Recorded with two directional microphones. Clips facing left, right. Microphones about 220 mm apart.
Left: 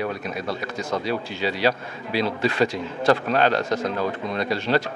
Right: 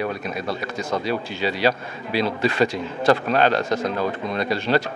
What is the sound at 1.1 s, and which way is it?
A man's voice, 10° right (ahead or behind).